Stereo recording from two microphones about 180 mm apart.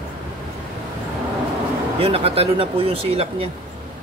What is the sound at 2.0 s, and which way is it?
Speech, 30° right (ahead or behind).